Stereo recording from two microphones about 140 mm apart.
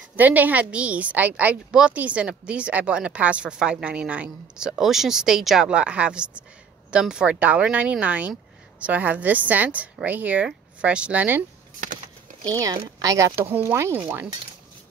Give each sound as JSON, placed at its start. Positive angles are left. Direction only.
{"t": 0.1, "sound": "a woman's voice", "side_deg": -10}
{"t": 11.8, "sound": "a sound", "side_deg": -65}
{"t": 12.4, "sound": "a woman's voice", "side_deg": -25}